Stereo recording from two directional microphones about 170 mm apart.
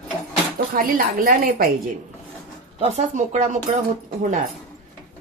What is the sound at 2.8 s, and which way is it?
Speech, 40° right (ahead or behind).